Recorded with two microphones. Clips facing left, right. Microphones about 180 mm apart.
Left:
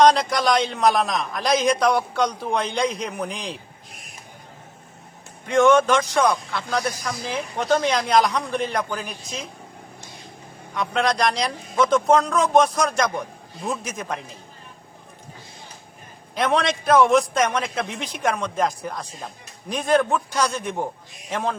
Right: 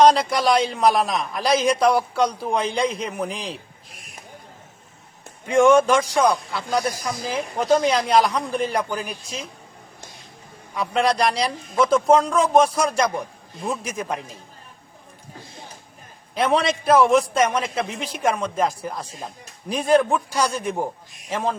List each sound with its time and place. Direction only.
0.0 s a man's voice: 5° right (ahead or behind)
5.5 s a man's voice: 10° right (ahead or behind)
10.8 s a man's voice: 5° right (ahead or behind)
16.3 s a man's voice: 5° right (ahead or behind)